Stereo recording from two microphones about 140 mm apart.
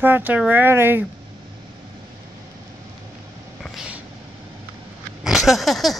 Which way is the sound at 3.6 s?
5° right (ahead or behind).